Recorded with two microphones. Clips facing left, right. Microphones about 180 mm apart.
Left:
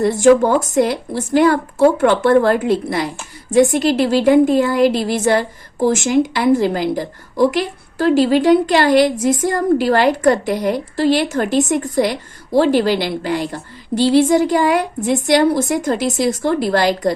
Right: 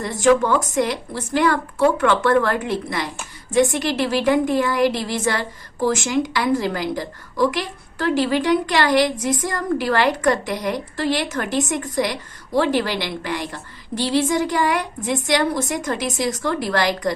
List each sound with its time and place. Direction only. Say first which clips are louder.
0.0 s a woman's voice: left 6 dB; 35° left (ahead or behind)